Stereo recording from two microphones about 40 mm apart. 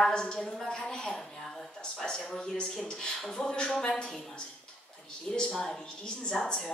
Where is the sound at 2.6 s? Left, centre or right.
Centre.